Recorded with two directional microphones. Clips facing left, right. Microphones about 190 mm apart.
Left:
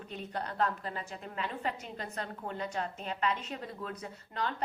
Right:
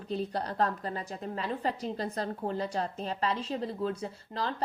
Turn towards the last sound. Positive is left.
turn(degrees=-30)  # may be behind; listen again after turning